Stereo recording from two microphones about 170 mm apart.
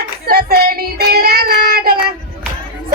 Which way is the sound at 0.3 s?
65° right (ahead or behind).